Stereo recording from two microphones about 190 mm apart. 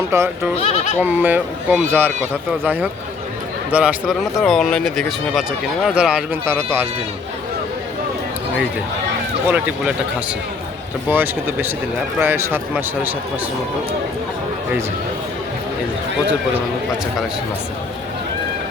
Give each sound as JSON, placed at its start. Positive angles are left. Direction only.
{"t": 0.1, "sound": "a man's voice", "side_deg": -15}
{"t": 0.6, "sound": "speech", "side_deg": 35}
{"t": 1.0, "sound": "a man's voice", "side_deg": -10}
{"t": 9.5, "sound": "a man's voice", "side_deg": -5}
{"t": 11.1, "sound": "a man's voice", "side_deg": -10}